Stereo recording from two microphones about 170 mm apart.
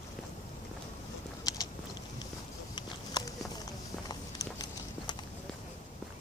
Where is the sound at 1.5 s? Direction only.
20° left (ahead or behind).